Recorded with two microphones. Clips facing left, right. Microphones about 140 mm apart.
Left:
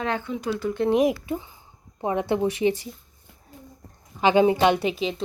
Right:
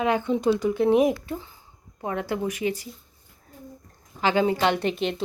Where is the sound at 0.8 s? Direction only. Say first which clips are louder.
Left 2 dB; centre (ahead or behind).